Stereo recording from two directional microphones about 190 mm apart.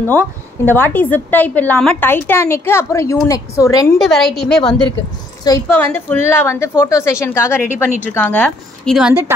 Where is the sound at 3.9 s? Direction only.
Centre (ahead or behind).